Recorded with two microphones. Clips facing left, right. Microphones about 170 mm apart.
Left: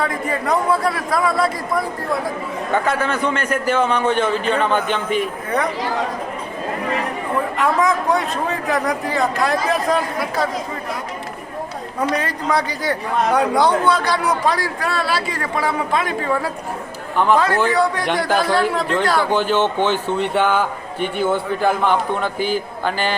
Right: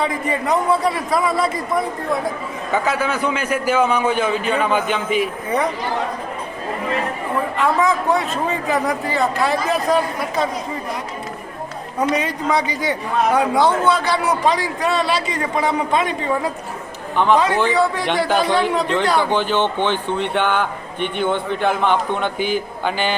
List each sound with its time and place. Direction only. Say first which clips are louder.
0.1 s a man's voice: even; centre (ahead or behind)
2.7 s a man's voice: even; 5° right (ahead or behind)
7.6 s a man's voice: right 1 dB; centre (ahead or behind)
11.9 s a man's voice: right 2 dB; 10° right (ahead or behind)
13.6 s speech: even; 15° left (ahead or behind)
13.9 s a man's voice: even; 10° right (ahead or behind); by 22.3 s 5° left (ahead or behind)